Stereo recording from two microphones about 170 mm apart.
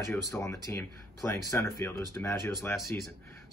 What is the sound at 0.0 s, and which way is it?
Speech, 20° left (ahead or behind).